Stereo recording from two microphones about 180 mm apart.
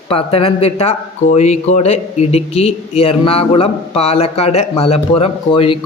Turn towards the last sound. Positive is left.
turn(degrees=30)  # may be behind; listen again after turning